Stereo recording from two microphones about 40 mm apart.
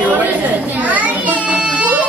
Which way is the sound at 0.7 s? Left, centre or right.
Right.